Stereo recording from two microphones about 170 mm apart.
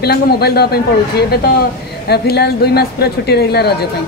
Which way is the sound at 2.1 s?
70° left (ahead or behind).